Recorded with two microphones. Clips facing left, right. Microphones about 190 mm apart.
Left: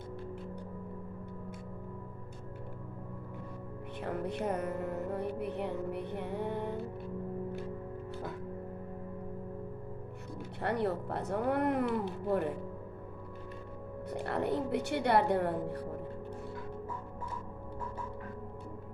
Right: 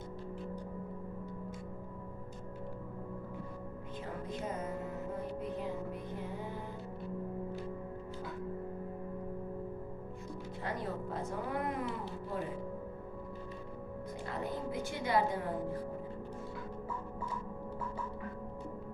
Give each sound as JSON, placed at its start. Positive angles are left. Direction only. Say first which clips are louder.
{"t": 4.0, "sound": "music", "louder": "left 6 dB", "side_deg": 65}
{"t": 10.6, "sound": "a sound", "louder": "left 7 dB", "side_deg": 65}
{"t": 14.1, "sound": "a woman's voice", "louder": "left 7 dB", "side_deg": 65}